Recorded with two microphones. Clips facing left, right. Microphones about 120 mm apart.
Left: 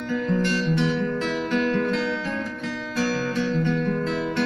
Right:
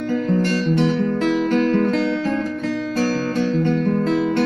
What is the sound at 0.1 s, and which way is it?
Guitar, 40° right (ahead or behind).